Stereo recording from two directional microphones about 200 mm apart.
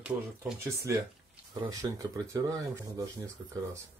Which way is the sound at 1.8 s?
15° right (ahead or behind).